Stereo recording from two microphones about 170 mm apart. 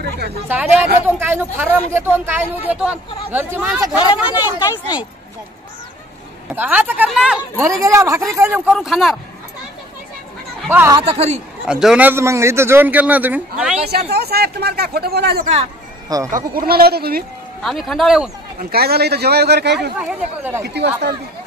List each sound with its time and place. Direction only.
0.5 s a man's voice: 10° right (ahead or behind)
4.6 s speech: 25° left (ahead or behind)
6.5 s a man's voice: 10° right (ahead or behind)
7.6 s a man's voice: 20° right (ahead or behind)
8.7 s speech: centre (ahead or behind)
10.7 s a man's voice: 10° right (ahead or behind)
11.0 s speech: 35° right (ahead or behind)
11.6 s a man's voice: 5° right (ahead or behind)
13.8 s speech: 70° right (ahead or behind)
16.3 s speech: 55° right (ahead or behind)
17.6 s speech: centre (ahead or behind)
18.6 s speech: 65° right (ahead or behind)
20.0 s a man's voice: 10° right (ahead or behind)
20.6 s speech: 80° right